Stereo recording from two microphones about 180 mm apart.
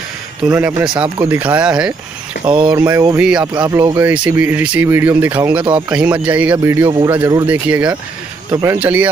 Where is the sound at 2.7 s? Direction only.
20° right (ahead or behind).